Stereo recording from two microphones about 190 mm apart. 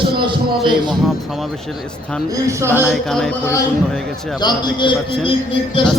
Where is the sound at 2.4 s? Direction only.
15° right (ahead or behind).